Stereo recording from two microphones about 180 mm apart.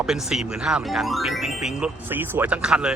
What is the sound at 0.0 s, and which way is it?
Speech, 5° right (ahead or behind).